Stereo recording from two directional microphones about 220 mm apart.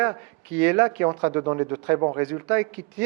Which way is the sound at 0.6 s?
10° right (ahead or behind).